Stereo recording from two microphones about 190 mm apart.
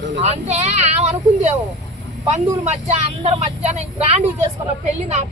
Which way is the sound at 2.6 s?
35° right (ahead or behind).